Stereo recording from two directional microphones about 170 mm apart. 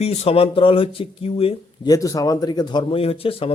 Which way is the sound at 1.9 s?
20° left (ahead or behind).